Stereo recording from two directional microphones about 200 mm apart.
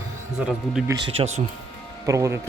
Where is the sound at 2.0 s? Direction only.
15° right (ahead or behind).